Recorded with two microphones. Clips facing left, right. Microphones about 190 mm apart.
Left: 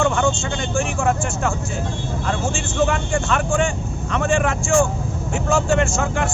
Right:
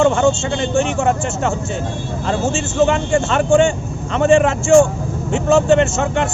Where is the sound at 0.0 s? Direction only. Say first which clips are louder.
Right 5 dB; 25° right (ahead or behind).